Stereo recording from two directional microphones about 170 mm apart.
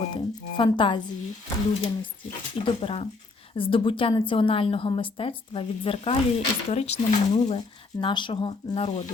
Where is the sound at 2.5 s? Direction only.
35° left (ahead or behind).